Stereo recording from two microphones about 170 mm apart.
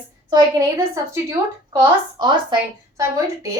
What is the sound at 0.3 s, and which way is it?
A woman's voice, 15° right (ahead or behind).